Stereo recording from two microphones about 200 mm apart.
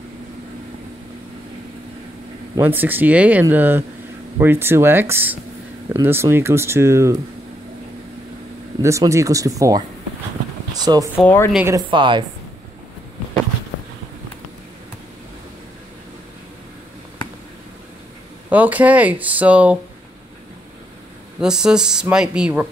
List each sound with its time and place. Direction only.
2.5 s speech: 10° right (ahead or behind)
8.8 s speech: 15° right (ahead or behind)
11.1 s speech: 10° left (ahead or behind)
11.5 s speech: 15° right (ahead or behind)
11.9 s a woman's voice: 25° right (ahead or behind)
18.5 s speech: 10° right (ahead or behind)
21.4 s speech: 5° right (ahead or behind)